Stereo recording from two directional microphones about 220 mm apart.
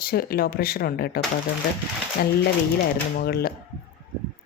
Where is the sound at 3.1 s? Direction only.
45° left (ahead or behind).